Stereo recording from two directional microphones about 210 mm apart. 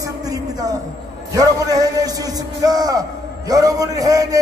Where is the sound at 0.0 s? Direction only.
15° right (ahead or behind).